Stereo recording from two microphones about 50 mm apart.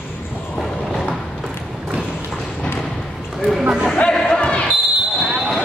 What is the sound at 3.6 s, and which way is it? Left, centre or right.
Speech, centre.